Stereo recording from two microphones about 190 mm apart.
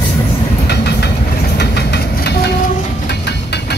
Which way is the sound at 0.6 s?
60° left (ahead or behind).